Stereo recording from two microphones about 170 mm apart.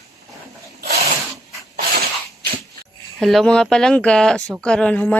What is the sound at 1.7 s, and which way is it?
Sneeze, 60° right (ahead or behind).